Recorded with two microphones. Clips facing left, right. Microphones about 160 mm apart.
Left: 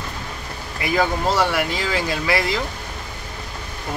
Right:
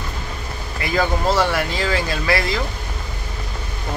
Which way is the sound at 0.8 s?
10° left (ahead or behind).